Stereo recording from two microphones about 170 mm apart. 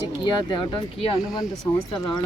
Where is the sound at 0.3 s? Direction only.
25° left (ahead or behind).